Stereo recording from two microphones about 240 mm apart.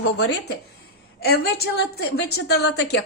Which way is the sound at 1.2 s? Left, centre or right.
Left.